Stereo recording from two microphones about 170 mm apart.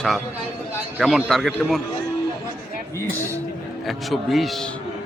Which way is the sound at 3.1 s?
15° right (ahead or behind).